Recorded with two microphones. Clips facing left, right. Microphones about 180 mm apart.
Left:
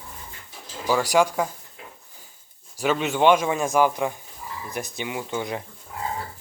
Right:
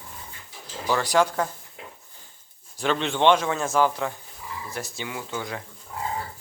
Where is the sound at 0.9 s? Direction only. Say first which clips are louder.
Left 2 dB; 10° left (ahead or behind).